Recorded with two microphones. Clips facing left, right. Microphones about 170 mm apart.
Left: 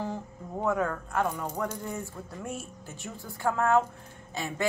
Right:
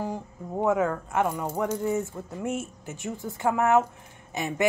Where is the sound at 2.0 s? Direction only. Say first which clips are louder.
Right 7 dB; 20° right (ahead or behind).